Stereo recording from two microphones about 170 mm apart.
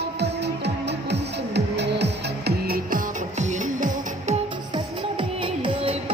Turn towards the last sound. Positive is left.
turn(degrees=-30)  # may be behind; listen again after turning